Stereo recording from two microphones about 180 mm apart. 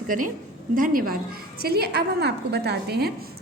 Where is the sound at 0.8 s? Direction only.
50° right (ahead or behind).